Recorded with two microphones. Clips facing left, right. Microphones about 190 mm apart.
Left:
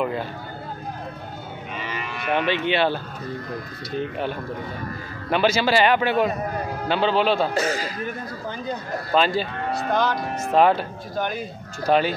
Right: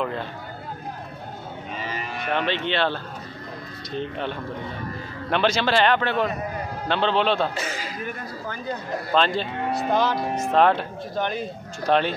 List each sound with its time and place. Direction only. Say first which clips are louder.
0.0 s speech: left 2 dB; 5° left (ahead or behind)
1.8 s moo: even; 40° right (ahead or behind)
2.2 s speech: left 3 dB; 10° left (ahead or behind)
7.5 s speech: left 7 dB; 40° left (ahead or behind)
9.1 s speech: left 1 dB; 5° left (ahead or behind)
9.6 s speech: right 1 dB; 20° right (ahead or behind)
9.8 s speech: even; 5° right (ahead or behind)